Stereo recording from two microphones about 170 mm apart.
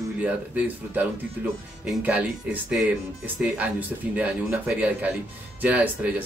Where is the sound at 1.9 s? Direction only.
10° right (ahead or behind).